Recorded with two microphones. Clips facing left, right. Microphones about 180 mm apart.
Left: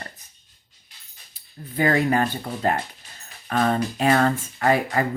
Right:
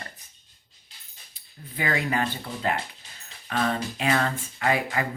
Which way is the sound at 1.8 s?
50° left (ahead or behind).